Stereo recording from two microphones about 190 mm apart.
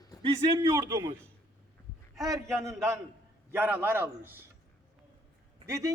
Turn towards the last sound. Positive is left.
turn(degrees=-15)  # may be behind; listen again after turning